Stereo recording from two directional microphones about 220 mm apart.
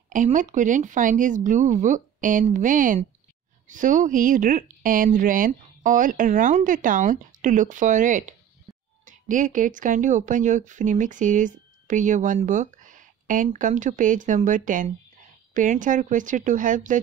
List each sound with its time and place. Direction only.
0.1 s speech: 35° right (ahead or behind)